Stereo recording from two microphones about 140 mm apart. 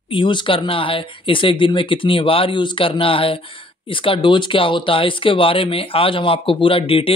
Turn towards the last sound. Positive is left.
turn(degrees=40)  # may be behind; listen again after turning